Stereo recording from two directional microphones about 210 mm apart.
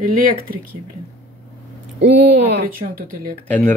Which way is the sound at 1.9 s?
55° right (ahead or behind).